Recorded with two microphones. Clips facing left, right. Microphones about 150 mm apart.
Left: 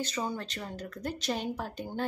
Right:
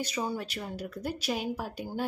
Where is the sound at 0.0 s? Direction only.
10° right (ahead or behind).